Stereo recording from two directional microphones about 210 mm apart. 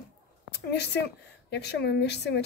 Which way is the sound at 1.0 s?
55° left (ahead or behind).